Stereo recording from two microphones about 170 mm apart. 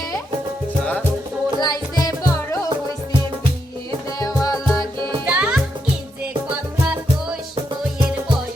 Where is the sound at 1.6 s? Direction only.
20° left (ahead or behind).